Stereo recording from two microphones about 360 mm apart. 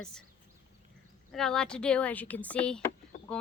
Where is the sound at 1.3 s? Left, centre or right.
Centre.